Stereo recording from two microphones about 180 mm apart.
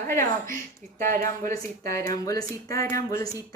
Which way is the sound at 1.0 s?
50° right (ahead or behind).